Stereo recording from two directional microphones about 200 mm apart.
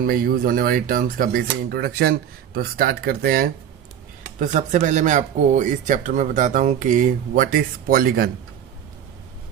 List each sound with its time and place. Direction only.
0.1 s speech: 45° right (ahead or behind)